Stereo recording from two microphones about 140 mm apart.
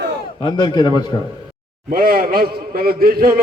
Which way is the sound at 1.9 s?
90° right.